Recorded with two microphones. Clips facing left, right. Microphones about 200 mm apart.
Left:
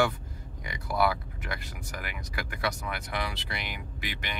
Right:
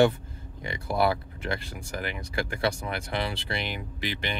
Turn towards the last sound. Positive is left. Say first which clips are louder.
# right 6 dB
turn(degrees=-30)  # may be behind; listen again after turning